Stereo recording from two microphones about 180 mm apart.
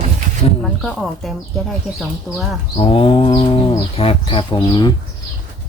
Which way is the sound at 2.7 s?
30° left (ahead or behind).